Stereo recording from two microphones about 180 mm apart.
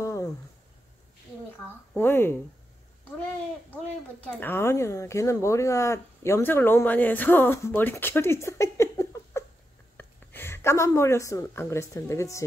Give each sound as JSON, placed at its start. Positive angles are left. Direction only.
{"t": 0.0, "sound": "a sound", "side_deg": 15}
{"t": 2.0, "sound": "speech", "side_deg": 10}
{"t": 4.2, "sound": "a woman's voice", "side_deg": 10}